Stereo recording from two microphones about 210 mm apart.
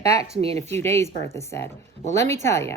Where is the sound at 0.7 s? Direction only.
10° left (ahead or behind).